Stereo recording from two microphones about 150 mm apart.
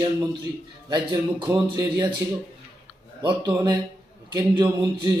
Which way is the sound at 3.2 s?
30° right (ahead or behind).